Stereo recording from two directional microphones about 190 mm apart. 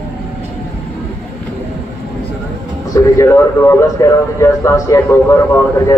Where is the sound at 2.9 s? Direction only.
15° left (ahead or behind).